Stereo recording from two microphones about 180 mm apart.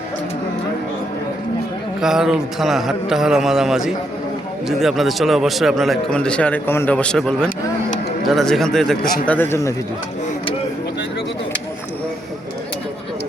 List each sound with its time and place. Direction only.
2.0 s a man's voice: 5° right (ahead or behind)